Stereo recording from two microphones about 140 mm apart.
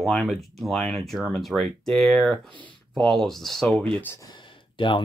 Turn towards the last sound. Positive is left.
turn(degrees=35)  # may be behind; listen again after turning